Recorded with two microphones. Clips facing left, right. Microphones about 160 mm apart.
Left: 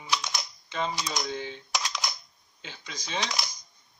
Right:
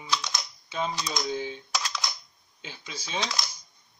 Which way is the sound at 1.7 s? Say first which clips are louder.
Even; 15° left (ahead or behind).